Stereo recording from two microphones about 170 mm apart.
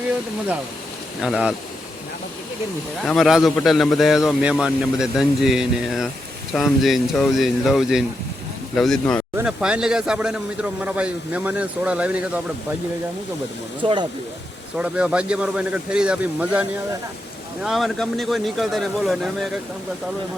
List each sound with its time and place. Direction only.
1.2 s speech: 5° right (ahead or behind)
3.0 s speech: centre (ahead or behind)
13.8 s speech: 35° right (ahead or behind)
14.8 s speech: 5° right (ahead or behind)